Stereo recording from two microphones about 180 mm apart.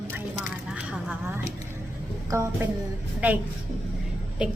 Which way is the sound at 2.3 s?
15° right (ahead or behind).